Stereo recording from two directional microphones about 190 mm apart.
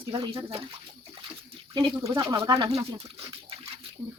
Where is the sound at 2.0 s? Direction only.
20° right (ahead or behind).